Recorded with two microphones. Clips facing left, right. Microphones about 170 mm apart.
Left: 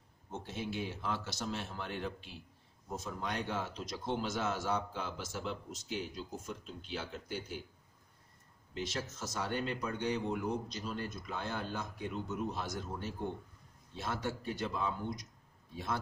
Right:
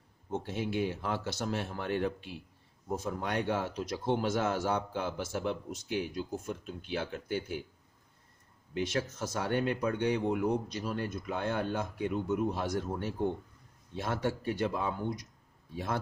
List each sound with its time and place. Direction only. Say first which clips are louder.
0.3 s speech: right 6 dB; 55° right (ahead or behind)
8.7 s speech: right 7 dB; 60° right (ahead or behind)